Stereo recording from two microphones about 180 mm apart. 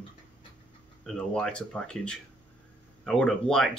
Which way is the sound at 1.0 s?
5° left (ahead or behind).